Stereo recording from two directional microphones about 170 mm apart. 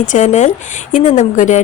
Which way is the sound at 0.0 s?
45° left (ahead or behind).